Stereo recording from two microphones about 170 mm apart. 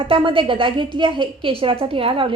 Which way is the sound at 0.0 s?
30° right (ahead or behind).